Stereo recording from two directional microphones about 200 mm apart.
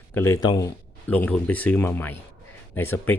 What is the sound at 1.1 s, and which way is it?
Speech, 5° left (ahead or behind).